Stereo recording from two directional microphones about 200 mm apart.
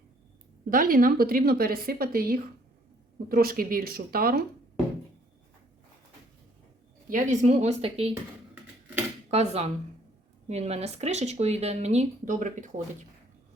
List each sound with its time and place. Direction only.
0.7 s a woman's voice: 45° right (ahead or behind)
7.1 s speech: 40° right (ahead or behind)
9.3 s speech: 30° right (ahead or behind)